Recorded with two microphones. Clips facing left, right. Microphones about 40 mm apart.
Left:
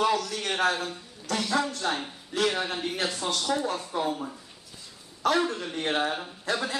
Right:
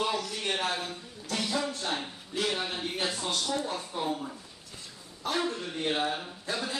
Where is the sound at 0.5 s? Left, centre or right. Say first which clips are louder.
Left 5 dB; left.